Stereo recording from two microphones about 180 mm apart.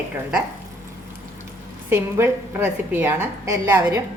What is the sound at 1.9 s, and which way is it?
A woman's voice, 10° right (ahead or behind).